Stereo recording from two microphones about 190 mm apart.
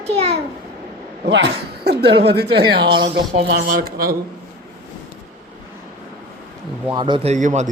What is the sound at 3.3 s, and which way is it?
Speech, 50° right (ahead or behind).